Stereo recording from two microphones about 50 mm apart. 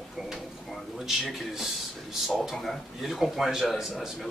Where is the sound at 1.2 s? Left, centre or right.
Centre.